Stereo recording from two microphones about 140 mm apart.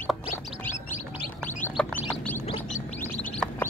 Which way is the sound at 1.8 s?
10° left (ahead or behind).